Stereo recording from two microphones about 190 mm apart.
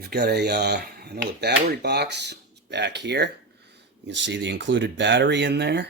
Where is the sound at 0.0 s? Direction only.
55° right (ahead or behind).